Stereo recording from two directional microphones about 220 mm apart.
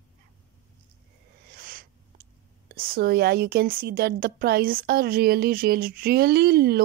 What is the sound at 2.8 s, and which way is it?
A woman's voice, 45° right (ahead or behind).